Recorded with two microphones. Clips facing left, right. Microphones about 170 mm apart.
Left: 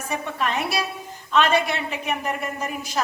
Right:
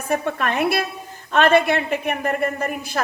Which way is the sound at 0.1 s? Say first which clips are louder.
Right 4 dB; 55° right (ahead or behind).